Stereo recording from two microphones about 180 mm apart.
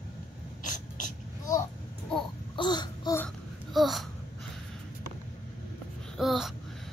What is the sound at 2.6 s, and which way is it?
Babbling, 25° left (ahead or behind).